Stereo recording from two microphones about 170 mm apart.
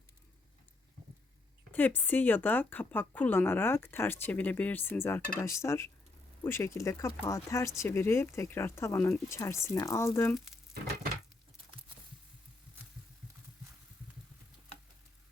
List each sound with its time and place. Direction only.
1.7 s speech: 10° left (ahead or behind)
10.3 s speech: centre (ahead or behind)